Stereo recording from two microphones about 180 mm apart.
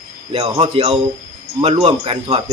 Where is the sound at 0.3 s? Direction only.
30° right (ahead or behind).